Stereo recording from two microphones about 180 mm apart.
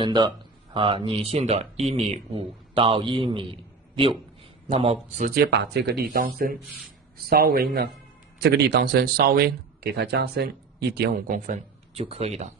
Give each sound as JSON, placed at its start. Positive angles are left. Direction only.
{"t": 0.0, "sound": "speech", "side_deg": -25}
{"t": 4.6, "sound": "speech", "side_deg": -35}
{"t": 5.4, "sound": "speech", "side_deg": -70}
{"t": 6.1, "sound": "a man's voice", "side_deg": -55}